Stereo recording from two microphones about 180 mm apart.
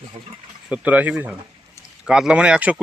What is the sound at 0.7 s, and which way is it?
Speech, 5° right (ahead or behind).